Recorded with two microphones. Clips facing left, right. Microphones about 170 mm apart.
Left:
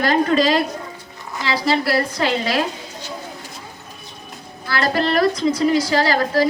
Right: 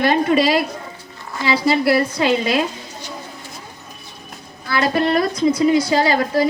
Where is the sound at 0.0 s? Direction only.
25° right (ahead or behind).